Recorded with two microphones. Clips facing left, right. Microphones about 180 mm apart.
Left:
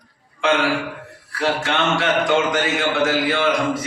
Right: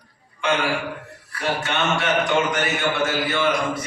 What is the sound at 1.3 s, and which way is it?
A man's voice, 90° left.